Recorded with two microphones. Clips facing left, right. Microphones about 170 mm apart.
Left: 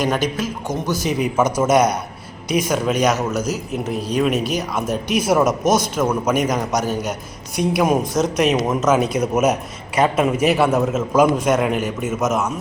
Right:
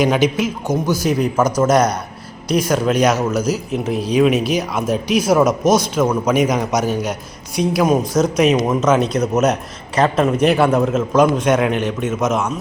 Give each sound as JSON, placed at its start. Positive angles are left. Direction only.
{"t": 0.0, "sound": "a man's voice", "side_deg": -10}
{"t": 1.0, "sound": "a man's voice", "side_deg": 5}
{"t": 7.5, "sound": "a woman's voice", "side_deg": 50}
{"t": 7.8, "sound": "a man's voice", "side_deg": 0}